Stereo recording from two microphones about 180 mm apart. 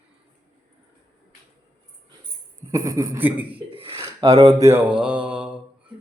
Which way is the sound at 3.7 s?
30° right (ahead or behind).